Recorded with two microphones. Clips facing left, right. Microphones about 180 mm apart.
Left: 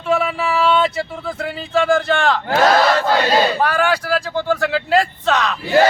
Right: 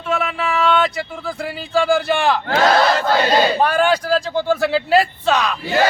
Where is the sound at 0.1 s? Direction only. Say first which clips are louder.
Left 3 dB; centre (ahead or behind).